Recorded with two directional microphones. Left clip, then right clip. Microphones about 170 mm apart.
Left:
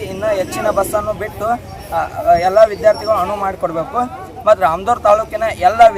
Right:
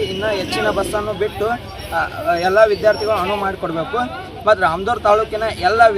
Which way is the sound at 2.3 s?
35° left (ahead or behind).